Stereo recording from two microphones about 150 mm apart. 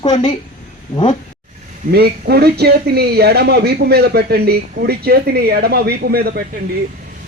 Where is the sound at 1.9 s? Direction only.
90° right.